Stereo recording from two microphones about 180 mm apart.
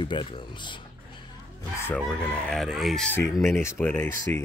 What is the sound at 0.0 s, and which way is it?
Speech, 25° left (ahead or behind).